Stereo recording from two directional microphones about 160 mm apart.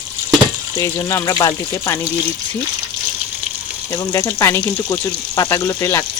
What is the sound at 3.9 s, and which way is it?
Speech, 25° left (ahead or behind).